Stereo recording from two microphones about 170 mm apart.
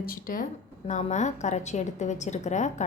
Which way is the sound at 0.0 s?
55° left (ahead or behind).